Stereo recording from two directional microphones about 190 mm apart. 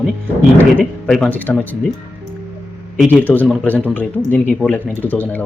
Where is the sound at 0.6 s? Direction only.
5° left (ahead or behind).